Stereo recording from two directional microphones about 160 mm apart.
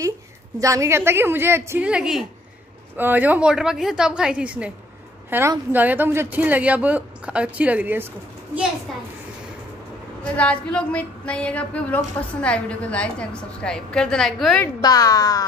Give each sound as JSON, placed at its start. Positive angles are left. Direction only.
{"t": 0.6, "sound": "speech", "side_deg": -20}
{"t": 10.3, "sound": "a woman's voice", "side_deg": 5}
{"t": 14.8, "sound": "speech", "side_deg": 25}